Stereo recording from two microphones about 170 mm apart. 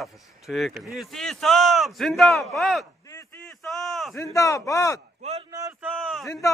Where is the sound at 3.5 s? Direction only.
Centre (ahead or behind).